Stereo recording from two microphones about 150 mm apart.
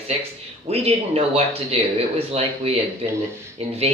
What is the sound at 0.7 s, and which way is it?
Speech, 45° right (ahead or behind).